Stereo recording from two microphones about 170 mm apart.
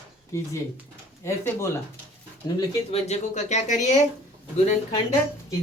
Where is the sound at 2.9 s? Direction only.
40° left (ahead or behind).